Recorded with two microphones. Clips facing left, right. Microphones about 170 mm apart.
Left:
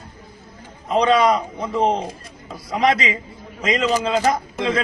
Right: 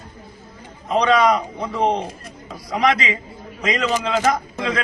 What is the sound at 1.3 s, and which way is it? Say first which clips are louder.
Speech: left 1 dB; centre (ahead or behind).